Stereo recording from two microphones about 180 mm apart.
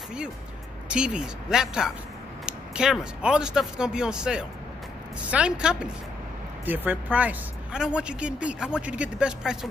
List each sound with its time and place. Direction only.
0.8 s speech: 5° right (ahead or behind)